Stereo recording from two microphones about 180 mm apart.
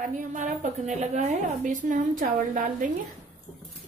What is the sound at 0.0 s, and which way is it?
A woman's voice, 45° right (ahead or behind).